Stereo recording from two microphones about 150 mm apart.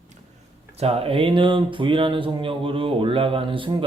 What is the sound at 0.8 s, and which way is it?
Speech, 40° right (ahead or behind).